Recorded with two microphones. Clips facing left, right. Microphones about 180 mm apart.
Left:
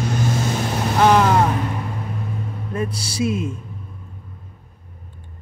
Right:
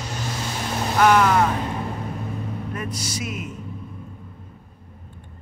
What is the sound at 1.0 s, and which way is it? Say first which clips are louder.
Speech: left 2 dB; 25° left (ahead or behind).